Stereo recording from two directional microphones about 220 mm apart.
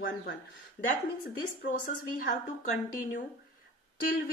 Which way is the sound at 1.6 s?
35° left (ahead or behind).